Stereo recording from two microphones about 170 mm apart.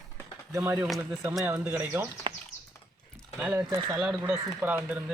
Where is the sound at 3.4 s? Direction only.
15° right (ahead or behind).